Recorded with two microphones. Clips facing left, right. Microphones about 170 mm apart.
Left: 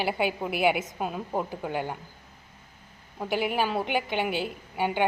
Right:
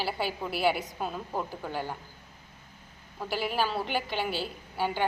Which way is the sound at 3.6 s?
15° left (ahead or behind).